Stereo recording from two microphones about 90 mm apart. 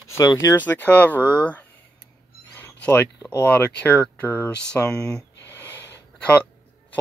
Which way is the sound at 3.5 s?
20° left (ahead or behind).